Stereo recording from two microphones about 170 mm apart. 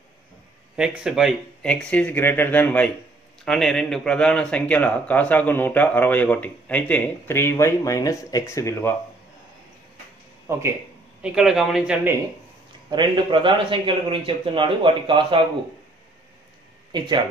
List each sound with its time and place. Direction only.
0.7 s speech: 5° right (ahead or behind); by 8.9 s 15° left (ahead or behind)
10.5 s speech: 15° right (ahead or behind)
11.2 s a man's voice: 5° right (ahead or behind)
12.9 s a man's voice: 25° right (ahead or behind)
16.9 s a man's voice: 25° right (ahead or behind)